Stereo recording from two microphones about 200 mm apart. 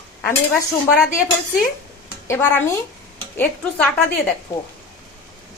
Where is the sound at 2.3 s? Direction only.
10° left (ahead or behind).